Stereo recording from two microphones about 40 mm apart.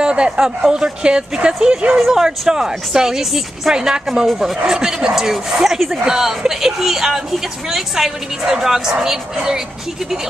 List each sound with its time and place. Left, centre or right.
0.0 s speech: right
2.0 s speech: centre
2.2 s speech: centre